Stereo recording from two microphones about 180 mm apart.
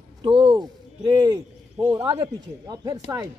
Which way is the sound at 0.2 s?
30° right (ahead or behind).